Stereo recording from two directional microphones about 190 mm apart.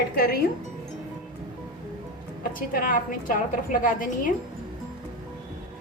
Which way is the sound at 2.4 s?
45° left (ahead or behind).